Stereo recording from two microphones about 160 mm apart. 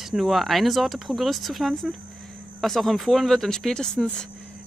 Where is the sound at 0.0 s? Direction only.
Centre (ahead or behind).